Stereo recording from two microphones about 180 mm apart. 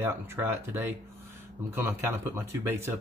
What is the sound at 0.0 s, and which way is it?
Speech, 15° right (ahead or behind).